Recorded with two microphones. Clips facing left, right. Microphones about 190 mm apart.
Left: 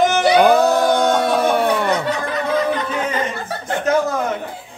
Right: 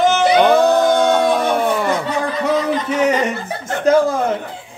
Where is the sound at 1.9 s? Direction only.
70° left (ahead or behind).